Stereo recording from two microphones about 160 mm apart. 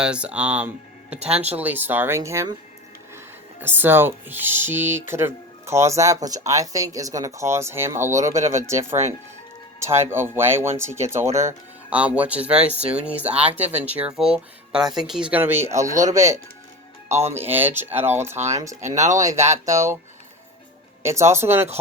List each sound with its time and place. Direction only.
0.0 s speech: 5° right (ahead or behind)
3.6 s speech: 15° right (ahead or behind)
9.8 s speech: 15° right (ahead or behind)
18.8 s speech: 45° right (ahead or behind)
19.4 s speech: 15° right (ahead or behind)
21.0 s speech: 15° right (ahead or behind)